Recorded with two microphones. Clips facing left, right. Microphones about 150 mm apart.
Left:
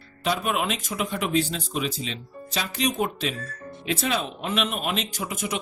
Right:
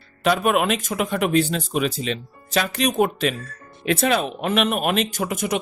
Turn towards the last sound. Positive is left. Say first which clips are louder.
# right 6 dB
turn(degrees=-55)  # may be behind; listen again after turning